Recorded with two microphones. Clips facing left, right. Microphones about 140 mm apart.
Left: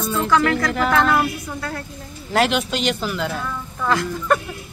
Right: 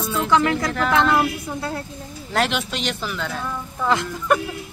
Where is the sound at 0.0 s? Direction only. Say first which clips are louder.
Left 1 dB; centre (ahead or behind).